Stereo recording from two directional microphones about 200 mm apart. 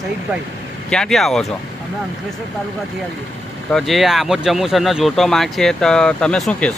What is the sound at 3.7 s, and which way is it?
Speech, centre (ahead or behind).